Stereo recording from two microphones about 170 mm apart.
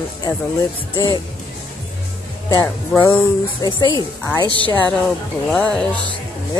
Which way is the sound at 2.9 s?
10° left (ahead or behind).